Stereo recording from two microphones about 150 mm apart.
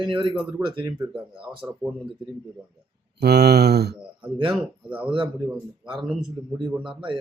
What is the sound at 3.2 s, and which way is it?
Speech, 90° right.